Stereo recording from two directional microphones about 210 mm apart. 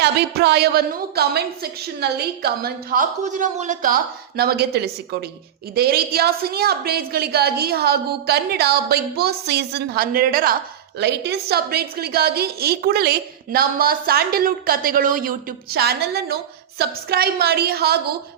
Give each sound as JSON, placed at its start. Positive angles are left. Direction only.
{"t": 0.0, "sound": "a woman's voice", "side_deg": -50}